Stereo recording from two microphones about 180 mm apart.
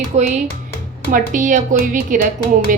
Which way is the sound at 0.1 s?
40° right (ahead or behind).